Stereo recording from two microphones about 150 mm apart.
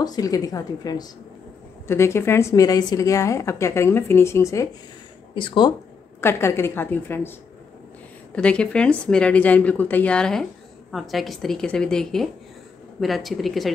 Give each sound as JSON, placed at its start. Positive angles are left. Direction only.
{"t": 0.0, "sound": "a woman's voice", "side_deg": 25}
{"t": 5.3, "sound": "speech", "side_deg": 35}
{"t": 6.2, "sound": "a woman's voice", "side_deg": 15}
{"t": 8.4, "sound": "a woman's voice", "side_deg": 5}